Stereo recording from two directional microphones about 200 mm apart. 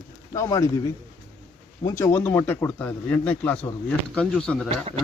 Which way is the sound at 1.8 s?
15° left (ahead or behind).